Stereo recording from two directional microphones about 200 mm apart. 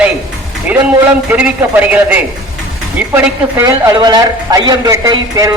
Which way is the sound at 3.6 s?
20° right (ahead or behind).